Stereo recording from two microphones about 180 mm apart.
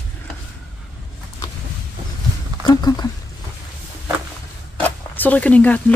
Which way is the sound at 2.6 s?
20° left (ahead or behind).